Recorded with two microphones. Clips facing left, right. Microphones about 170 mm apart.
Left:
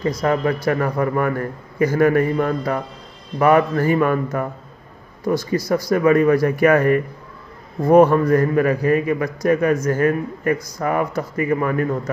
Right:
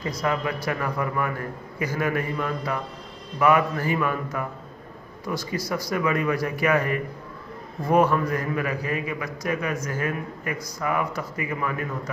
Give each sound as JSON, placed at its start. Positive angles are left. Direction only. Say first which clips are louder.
{"t": 0.0, "sound": "a man's voice", "louder": "left 7 dB", "side_deg": 45}
{"t": 5.5, "sound": "a man's voice", "louder": "left 7 dB", "side_deg": 45}